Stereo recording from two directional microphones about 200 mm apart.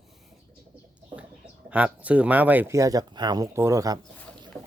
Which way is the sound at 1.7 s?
5° right (ahead or behind).